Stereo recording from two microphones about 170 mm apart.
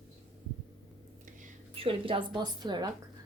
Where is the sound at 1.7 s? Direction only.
35° right (ahead or behind).